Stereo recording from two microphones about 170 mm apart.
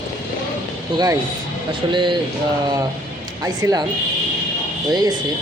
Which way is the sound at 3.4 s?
20° right (ahead or behind).